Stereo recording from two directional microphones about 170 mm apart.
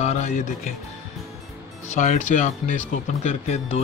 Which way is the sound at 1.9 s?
45° left (ahead or behind).